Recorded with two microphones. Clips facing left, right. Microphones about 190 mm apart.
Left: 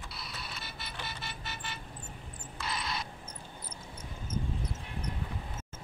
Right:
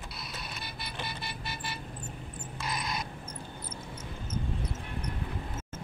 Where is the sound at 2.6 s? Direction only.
15° right (ahead or behind).